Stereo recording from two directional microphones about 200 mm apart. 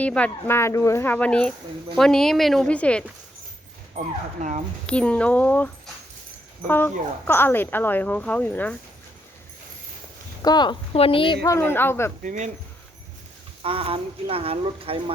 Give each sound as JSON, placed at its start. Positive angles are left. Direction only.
{"t": 0.0, "sound": "a woman's voice", "side_deg": 5}
{"t": 3.9, "sound": "speech", "side_deg": -35}
{"t": 4.9, "sound": "speech", "side_deg": 5}
{"t": 10.4, "sound": "a woman's voice", "side_deg": 20}
{"t": 11.4, "sound": "speech", "side_deg": 10}
{"t": 12.2, "sound": "speech", "side_deg": -40}
{"t": 13.6, "sound": "speech", "side_deg": -30}